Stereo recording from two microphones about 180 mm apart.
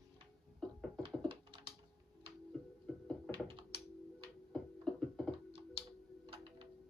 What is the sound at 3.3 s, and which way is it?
Thunk, 30° right (ahead or behind).